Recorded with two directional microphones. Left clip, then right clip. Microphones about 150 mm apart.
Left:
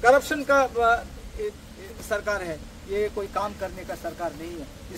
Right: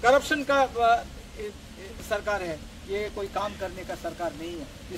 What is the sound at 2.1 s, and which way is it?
Speech, 10° left (ahead or behind).